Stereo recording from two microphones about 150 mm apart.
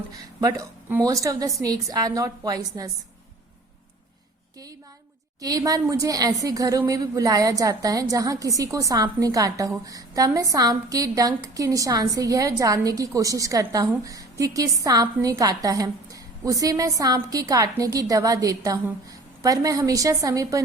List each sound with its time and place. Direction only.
0.3 s a woman's voice: 20° right (ahead or behind)
5.4 s a woman's voice: 25° right (ahead or behind)